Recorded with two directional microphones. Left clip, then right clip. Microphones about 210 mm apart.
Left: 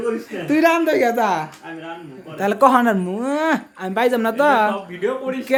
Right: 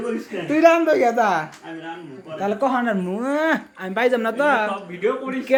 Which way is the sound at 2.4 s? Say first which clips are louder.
Left 7 dB; 40° left (ahead or behind).